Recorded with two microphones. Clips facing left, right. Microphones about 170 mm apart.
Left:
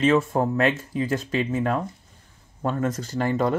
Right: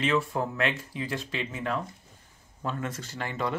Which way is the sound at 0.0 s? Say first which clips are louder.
Left 7 dB; 45° left (ahead or behind).